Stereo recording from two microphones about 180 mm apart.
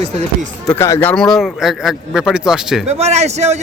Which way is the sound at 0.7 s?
15° left (ahead or behind).